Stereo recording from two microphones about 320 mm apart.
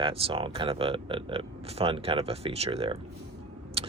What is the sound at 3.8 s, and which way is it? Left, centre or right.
Vehicle, centre.